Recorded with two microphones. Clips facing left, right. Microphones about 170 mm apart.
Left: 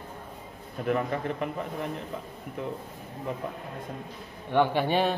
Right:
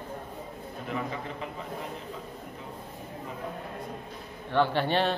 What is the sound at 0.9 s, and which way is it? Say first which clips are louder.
Speech: left 7 dB; 55° left (ahead or behind).